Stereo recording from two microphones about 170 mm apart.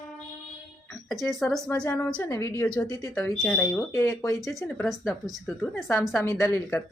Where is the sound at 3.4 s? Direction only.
5° left (ahead or behind).